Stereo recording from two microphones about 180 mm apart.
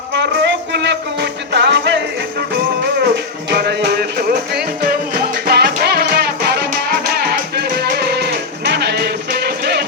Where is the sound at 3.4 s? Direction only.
65° right (ahead or behind).